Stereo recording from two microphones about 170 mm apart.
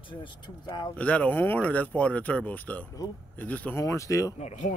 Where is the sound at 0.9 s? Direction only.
10° left (ahead or behind).